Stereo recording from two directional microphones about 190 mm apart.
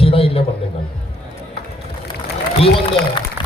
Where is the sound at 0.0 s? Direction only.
30° left (ahead or behind).